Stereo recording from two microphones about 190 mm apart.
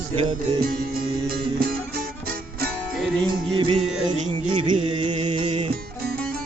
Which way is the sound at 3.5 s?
30° right (ahead or behind).